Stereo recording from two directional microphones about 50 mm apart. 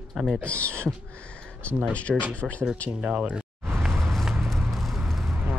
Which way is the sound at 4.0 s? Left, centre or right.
Centre.